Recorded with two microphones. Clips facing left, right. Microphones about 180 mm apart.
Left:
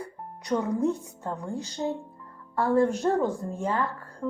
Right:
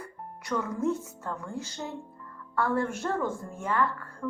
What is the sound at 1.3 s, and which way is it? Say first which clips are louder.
Speech: left 3 dB; 35° left (ahead or behind).